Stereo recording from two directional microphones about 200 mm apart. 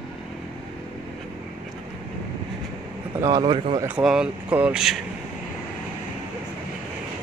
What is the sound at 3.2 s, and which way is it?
Speech, 20° right (ahead or behind).